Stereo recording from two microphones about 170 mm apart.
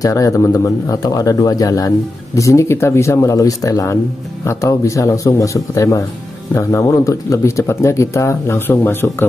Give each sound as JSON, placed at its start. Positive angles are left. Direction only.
{"t": 0.0, "sound": "speech", "side_deg": 20}